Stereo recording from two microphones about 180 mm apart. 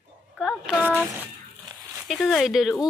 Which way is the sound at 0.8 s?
10° right (ahead or behind).